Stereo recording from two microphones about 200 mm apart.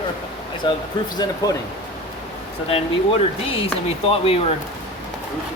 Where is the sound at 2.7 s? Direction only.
30° left (ahead or behind).